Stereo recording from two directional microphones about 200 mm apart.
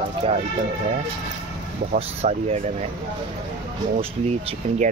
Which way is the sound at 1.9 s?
35° right (ahead or behind).